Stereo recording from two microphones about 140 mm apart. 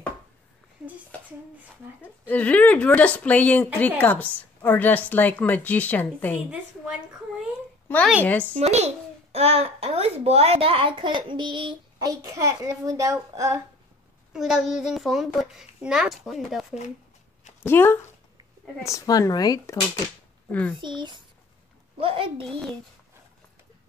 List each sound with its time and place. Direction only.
2.0 s speech: 10° left (ahead or behind)
6.5 s a woman's voice: 5° right (ahead or behind)
8.5 s a child's voice: 50° right (ahead or behind); by 13.6 s 25° right (ahead or behind)
14.3 s a child's voice: centre (ahead or behind)
17.6 s speech: 15° left (ahead or behind)
20.8 s a child's voice: 35° right (ahead or behind)
22.5 s a child's voice: 5° left (ahead or behind)